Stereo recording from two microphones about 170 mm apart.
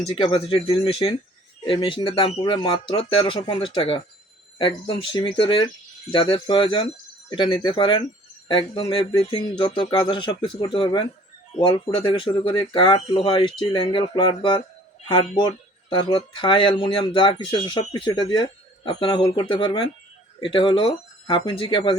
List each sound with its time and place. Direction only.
0.0 s speech: 30° left (ahead or behind)